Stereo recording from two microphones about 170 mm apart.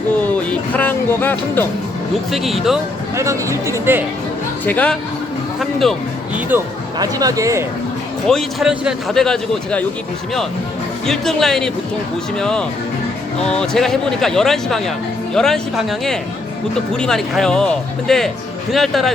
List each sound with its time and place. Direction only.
0.7 s music: 10° left (ahead or behind)
2.3 s speech: centre (ahead or behind)
3.2 s speech: 15° right (ahead or behind)
4.6 s music: 10° left (ahead or behind)
5.5 s speech: centre (ahead or behind)
7.0 s speech: 20° right (ahead or behind)
8.3 s speech: centre (ahead or behind)
11.0 s speech: centre (ahead or behind)